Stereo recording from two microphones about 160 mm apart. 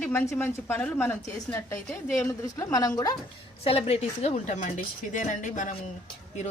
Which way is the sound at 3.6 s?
40° left (ahead or behind).